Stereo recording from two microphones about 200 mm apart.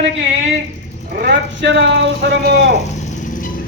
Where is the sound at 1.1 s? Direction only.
55° right (ahead or behind).